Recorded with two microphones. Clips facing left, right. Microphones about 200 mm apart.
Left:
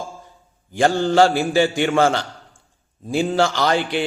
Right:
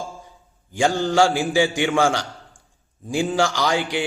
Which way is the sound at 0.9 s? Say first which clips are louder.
Left 3 dB; 15° left (ahead or behind).